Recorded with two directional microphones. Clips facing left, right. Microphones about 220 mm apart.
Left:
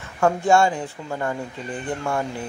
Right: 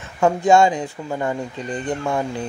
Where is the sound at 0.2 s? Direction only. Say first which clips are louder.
Right 3 dB; 20° right (ahead or behind).